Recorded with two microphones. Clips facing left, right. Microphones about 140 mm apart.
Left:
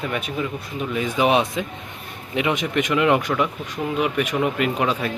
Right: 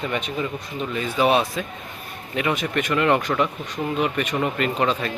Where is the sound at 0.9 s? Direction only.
15° left (ahead or behind).